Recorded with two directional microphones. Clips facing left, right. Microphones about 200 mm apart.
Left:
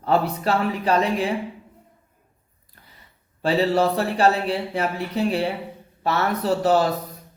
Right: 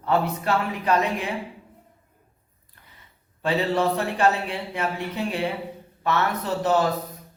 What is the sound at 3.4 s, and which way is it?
Speech, 35° left (ahead or behind).